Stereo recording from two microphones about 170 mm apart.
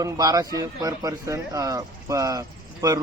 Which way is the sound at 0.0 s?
20° right (ahead or behind).